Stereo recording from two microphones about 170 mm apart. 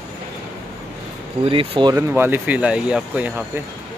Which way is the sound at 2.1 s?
10° right (ahead or behind).